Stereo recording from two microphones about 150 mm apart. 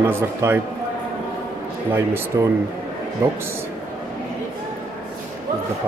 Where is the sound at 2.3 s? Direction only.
20° right (ahead or behind).